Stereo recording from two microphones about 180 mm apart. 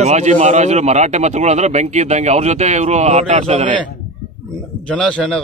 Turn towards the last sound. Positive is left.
turn(degrees=5)  # may be behind; listen again after turning